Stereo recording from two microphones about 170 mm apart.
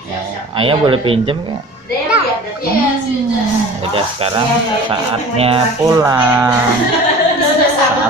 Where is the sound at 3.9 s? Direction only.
30° right (ahead or behind).